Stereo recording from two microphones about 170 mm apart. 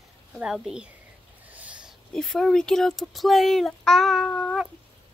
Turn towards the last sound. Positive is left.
turn(degrees=5)  # may be behind; listen again after turning